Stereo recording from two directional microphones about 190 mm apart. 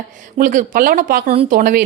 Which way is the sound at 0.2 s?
45° right (ahead or behind).